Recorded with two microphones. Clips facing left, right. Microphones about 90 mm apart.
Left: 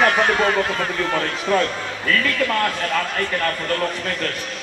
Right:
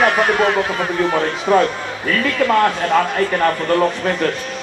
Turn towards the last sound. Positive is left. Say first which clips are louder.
# right 7 dB
turn(degrees=-30)  # may be behind; listen again after turning